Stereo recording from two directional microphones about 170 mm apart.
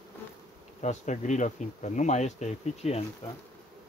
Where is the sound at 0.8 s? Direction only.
45° left (ahead or behind).